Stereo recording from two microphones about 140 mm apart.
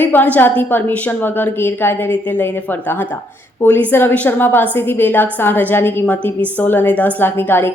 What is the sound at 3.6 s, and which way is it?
A woman's voice, 15° left (ahead or behind).